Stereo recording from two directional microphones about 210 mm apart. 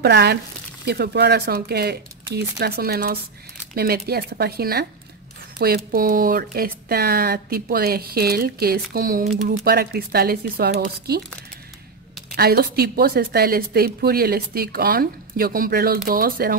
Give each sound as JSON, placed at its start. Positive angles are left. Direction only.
{"t": 0.0, "sound": "a woman's voice", "side_deg": -50}
{"t": 9.6, "sound": "a woman's voice", "side_deg": -50}
{"t": 12.4, "sound": "a woman's voice", "side_deg": -50}